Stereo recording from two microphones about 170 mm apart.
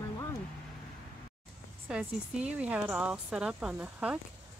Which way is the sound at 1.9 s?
5° right (ahead or behind).